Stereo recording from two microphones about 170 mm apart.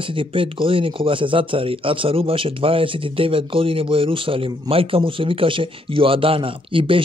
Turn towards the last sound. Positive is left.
turn(degrees=-30)  # may be behind; listen again after turning